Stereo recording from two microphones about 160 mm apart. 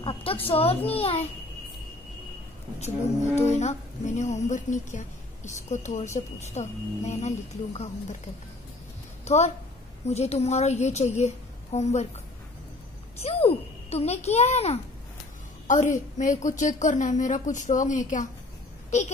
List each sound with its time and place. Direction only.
0.0 s a child's voice: 35° left (ahead or behind)
3.3 s speech: 45° left (ahead or behind)
9.2 s a woman's voice: 45° left (ahead or behind)
13.2 s a child's voice: 40° left (ahead or behind)